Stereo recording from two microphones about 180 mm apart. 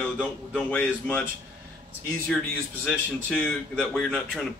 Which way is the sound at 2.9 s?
5° left (ahead or behind).